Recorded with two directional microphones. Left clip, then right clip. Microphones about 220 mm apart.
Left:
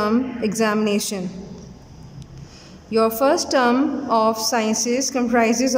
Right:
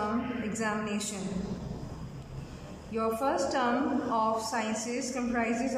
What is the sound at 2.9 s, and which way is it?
A woman's voice, 50° left (ahead or behind).